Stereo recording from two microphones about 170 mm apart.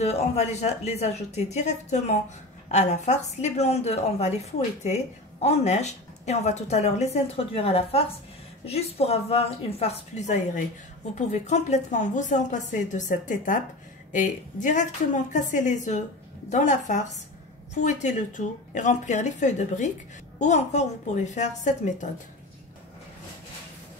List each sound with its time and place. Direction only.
0.0 s a woman's voice: 40° left (ahead or behind)